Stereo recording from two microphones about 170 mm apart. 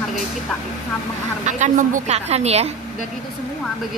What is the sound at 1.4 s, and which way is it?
A woman's voice, 45° right (ahead or behind).